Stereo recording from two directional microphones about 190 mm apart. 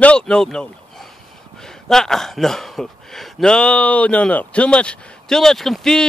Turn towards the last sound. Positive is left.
turn(degrees=5)  # may be behind; listen again after turning